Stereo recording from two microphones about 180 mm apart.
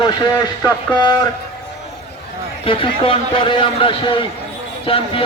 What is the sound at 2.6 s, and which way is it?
A man's voice, 30° left (ahead or behind).